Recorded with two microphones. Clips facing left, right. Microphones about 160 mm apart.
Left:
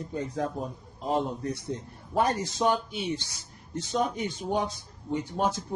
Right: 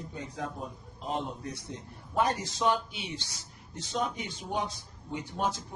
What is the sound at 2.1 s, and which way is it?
A man's voice, 45° left (ahead or behind).